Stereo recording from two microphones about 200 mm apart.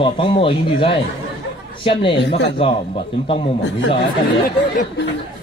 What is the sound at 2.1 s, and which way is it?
Speech, 60° left (ahead or behind).